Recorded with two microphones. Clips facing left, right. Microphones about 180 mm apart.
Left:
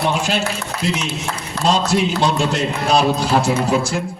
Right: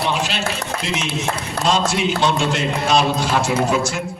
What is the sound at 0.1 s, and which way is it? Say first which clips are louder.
Speech: left 3 dB; 45° left (ahead or behind).